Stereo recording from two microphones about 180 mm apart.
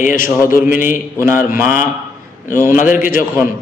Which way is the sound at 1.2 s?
15° right (ahead or behind).